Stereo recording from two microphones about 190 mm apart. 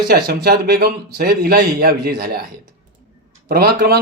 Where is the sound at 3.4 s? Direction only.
55° right (ahead or behind).